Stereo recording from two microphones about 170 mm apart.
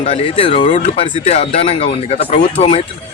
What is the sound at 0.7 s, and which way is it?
Speech, 45° left (ahead or behind).